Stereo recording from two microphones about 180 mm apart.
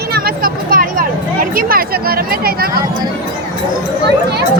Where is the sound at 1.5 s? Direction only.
55° right (ahead or behind).